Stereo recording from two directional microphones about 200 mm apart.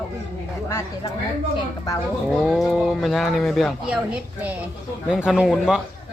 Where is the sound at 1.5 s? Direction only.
20° left (ahead or behind).